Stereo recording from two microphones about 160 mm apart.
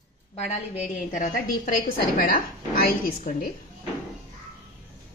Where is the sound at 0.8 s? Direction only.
50° left (ahead or behind).